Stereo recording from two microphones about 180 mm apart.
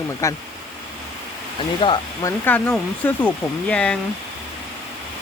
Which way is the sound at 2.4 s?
10° left (ahead or behind).